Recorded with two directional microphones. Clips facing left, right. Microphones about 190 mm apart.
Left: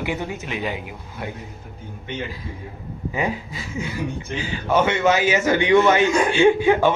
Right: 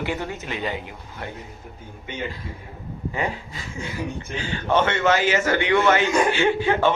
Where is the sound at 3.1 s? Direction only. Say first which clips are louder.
Left 3 dB; 10° left (ahead or behind).